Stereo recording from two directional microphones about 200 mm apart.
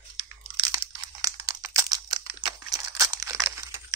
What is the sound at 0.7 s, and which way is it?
Crumpling, 20° right (ahead or behind).